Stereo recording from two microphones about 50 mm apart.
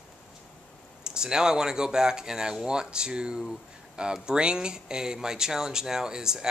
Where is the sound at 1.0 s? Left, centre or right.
Centre.